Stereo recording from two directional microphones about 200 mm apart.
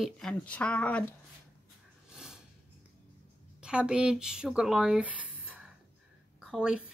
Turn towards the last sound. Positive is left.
turn(degrees=-5)  # may be behind; listen again after turning